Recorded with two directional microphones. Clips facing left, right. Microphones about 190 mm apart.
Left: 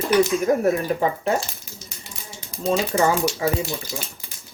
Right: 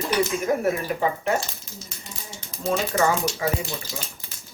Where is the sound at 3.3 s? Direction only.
30° left (ahead or behind).